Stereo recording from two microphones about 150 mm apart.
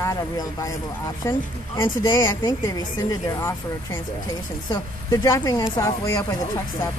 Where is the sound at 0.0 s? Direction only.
20° left (ahead or behind).